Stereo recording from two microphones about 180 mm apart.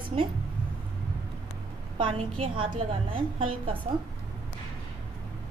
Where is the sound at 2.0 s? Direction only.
30° right (ahead or behind).